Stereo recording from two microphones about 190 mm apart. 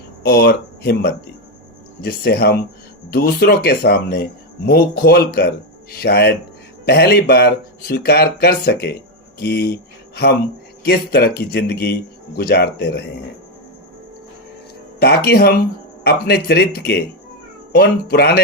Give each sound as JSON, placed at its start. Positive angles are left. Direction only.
{"t": 0.2, "sound": "speech", "side_deg": 55}
{"t": 10.8, "sound": "speech", "side_deg": 55}
{"t": 14.9, "sound": "speech", "side_deg": 55}